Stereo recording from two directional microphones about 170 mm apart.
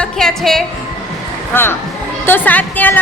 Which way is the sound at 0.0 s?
5° left (ahead or behind).